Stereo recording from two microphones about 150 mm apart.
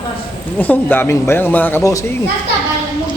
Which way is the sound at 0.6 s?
10° left (ahead or behind).